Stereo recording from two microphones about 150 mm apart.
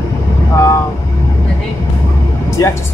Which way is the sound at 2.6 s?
25° left (ahead or behind).